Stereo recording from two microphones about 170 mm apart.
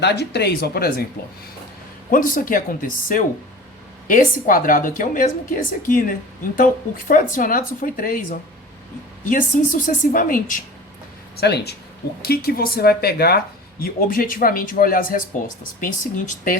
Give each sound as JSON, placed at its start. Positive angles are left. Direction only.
{"t": 0.0, "sound": "speech", "side_deg": 80}
{"t": 2.0, "sound": "a woman's voice", "side_deg": 55}
{"t": 11.3, "sound": "a woman's voice", "side_deg": 75}